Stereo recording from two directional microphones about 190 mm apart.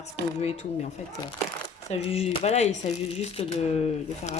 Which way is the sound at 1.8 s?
30° left (ahead or behind).